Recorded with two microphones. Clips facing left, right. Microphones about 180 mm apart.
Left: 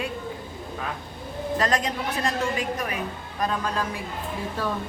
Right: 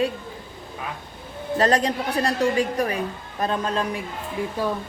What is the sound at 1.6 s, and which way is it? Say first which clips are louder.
A woman's voice: right 6 dB; 30° right (ahead or behind).